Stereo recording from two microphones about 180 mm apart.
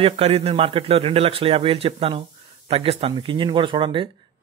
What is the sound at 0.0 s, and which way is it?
Speech, 35° right (ahead or behind).